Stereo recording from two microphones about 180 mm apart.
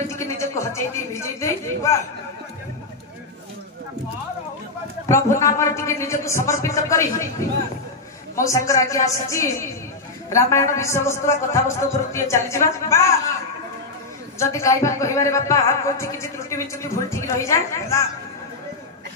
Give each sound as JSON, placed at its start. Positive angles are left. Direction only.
{"t": 0.1, "sound": "a sound", "side_deg": 15}
{"t": 5.0, "sound": "speech", "side_deg": 15}
{"t": 14.4, "sound": "speech", "side_deg": 15}